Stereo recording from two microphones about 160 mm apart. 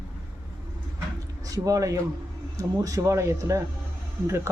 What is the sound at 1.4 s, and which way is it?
Speech, 20° right (ahead or behind).